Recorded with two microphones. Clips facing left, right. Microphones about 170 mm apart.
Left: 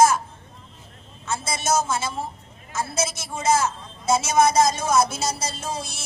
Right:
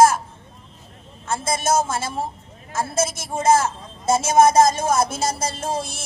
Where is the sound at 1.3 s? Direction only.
50° right (ahead or behind).